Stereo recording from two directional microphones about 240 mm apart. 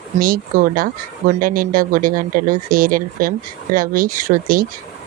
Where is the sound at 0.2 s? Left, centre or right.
Right.